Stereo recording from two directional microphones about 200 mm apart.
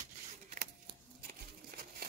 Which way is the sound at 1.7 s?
50° right (ahead or behind).